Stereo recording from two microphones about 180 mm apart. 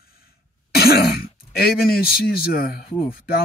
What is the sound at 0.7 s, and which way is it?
Throat clearing, 60° left (ahead or behind).